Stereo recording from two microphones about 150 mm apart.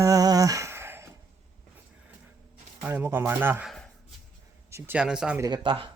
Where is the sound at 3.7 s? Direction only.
5° left (ahead or behind).